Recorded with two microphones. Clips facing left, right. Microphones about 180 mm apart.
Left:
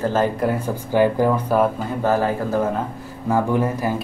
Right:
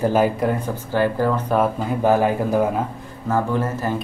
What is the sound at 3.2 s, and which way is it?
Speech, 15° left (ahead or behind).